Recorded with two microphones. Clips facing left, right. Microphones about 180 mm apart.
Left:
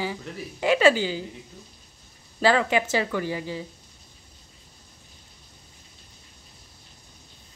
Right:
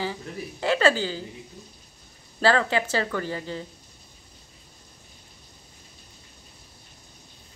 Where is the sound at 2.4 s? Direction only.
10° left (ahead or behind).